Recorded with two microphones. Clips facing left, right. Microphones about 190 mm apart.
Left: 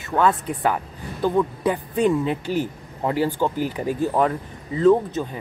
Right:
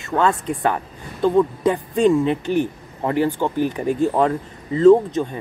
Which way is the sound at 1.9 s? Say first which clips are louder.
Right 4 dB; 25° right (ahead or behind).